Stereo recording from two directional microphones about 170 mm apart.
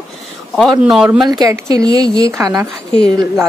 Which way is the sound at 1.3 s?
20° right (ahead or behind).